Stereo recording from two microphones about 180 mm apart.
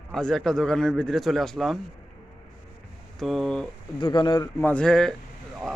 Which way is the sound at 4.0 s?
25° left (ahead or behind).